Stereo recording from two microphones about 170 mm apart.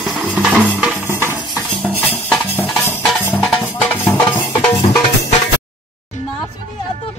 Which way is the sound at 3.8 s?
5° left (ahead or behind).